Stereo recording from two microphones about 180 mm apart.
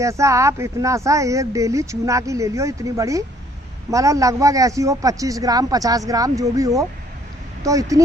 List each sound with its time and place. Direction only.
0.0 s a man's voice: 15° right (ahead or behind)